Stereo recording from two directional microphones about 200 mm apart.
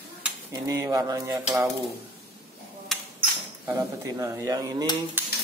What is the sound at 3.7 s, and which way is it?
Speech, 15° right (ahead or behind).